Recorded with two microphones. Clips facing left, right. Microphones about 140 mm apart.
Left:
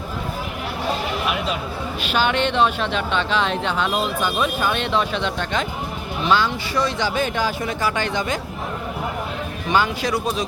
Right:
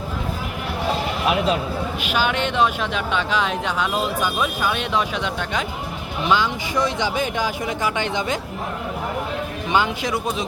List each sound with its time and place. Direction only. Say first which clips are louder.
2.0 s speech: left 3 dB; 10° right (ahead or behind)
9.7 s speech: left 1 dB; 20° right (ahead or behind)